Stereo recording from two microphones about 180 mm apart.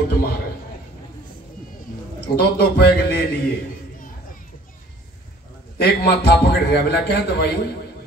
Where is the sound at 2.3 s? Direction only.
60° left (ahead or behind).